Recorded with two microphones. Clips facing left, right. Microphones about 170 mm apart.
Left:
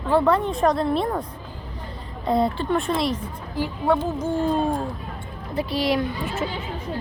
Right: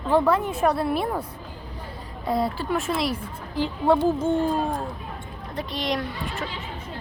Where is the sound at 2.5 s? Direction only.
5° right (ahead or behind).